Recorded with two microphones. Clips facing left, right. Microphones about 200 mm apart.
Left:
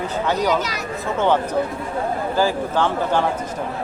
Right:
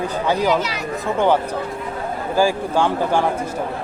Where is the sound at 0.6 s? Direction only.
45° left (ahead or behind).